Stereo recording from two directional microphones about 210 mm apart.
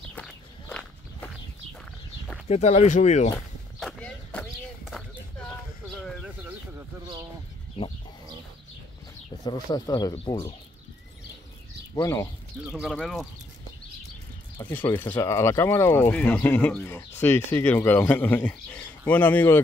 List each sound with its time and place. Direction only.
0.1 s walk: 5° left (ahead or behind)
2.4 s speech: 30° left (ahead or behind)
3.8 s clip-clop: 5° left (ahead or behind)
6.8 s a sound: 15° right (ahead or behind)
9.4 s speech: 20° left (ahead or behind)
11.9 s speech: 15° left (ahead or behind)
12.6 s speech: 5° right (ahead or behind)
14.7 s speech: 10° left (ahead or behind)